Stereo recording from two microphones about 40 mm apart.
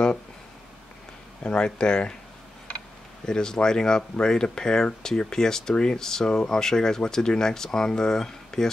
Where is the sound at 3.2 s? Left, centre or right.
Centre.